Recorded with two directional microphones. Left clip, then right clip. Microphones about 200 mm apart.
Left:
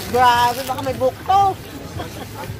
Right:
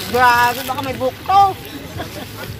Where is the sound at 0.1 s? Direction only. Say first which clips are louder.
Right 1 dB; 40° right (ahead or behind).